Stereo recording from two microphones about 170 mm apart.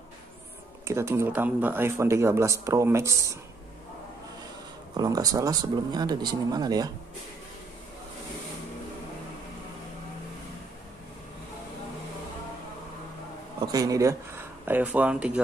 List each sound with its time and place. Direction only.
0.8 s speech: 15° right (ahead or behind)
4.9 s speech: 20° right (ahead or behind)
13.6 s speech: 20° right (ahead or behind)
14.7 s speech: 10° right (ahead or behind)